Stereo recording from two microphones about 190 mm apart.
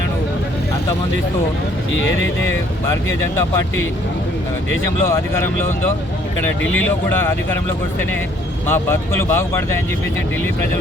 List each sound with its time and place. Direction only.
2.0 s speech: 85° left
3.3 s speech: 15° left (ahead or behind)
6.7 s speech: 10° left (ahead or behind)
8.6 s speech: 10° left (ahead or behind)